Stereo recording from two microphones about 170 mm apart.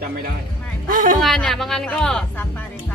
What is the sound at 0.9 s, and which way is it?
Music, 50° right (ahead or behind).